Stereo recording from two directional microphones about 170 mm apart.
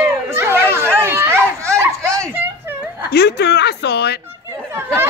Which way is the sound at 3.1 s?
75° left (ahead or behind).